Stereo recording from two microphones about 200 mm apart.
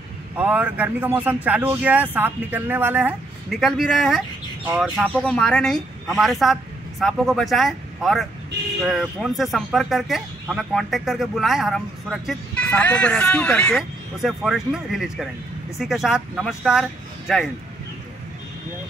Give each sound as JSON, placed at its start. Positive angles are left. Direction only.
{"t": 0.4, "sound": "speech", "side_deg": -5}